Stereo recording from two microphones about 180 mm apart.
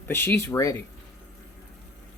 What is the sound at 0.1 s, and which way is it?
Speech, 15° left (ahead or behind).